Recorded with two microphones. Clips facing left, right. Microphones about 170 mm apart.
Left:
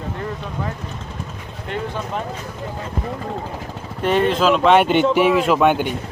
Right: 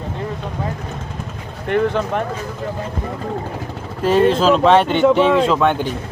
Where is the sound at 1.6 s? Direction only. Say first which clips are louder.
Right 9 dB; 60° right (ahead or behind).